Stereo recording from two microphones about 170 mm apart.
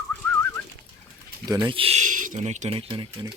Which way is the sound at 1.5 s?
25° right (ahead or behind).